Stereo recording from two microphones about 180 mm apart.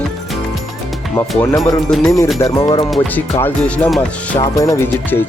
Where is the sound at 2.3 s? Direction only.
15° left (ahead or behind).